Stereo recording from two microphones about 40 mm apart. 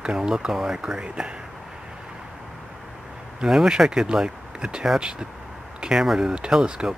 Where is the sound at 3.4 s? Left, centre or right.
Centre.